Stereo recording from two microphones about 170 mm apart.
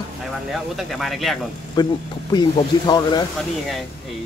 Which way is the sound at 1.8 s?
25° left (ahead or behind).